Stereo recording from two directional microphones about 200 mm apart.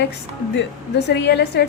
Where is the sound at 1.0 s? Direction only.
55° left (ahead or behind).